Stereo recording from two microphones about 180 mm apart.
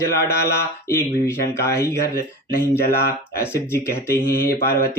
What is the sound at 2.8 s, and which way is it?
Speech, 55° left (ahead or behind).